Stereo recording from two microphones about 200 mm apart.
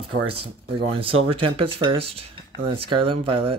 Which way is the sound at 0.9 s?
25° right (ahead or behind).